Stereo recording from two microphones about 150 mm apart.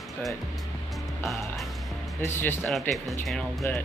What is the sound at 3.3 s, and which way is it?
Speech, centre (ahead or behind).